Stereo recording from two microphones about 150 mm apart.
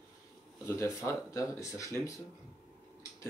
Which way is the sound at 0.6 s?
20° left (ahead or behind).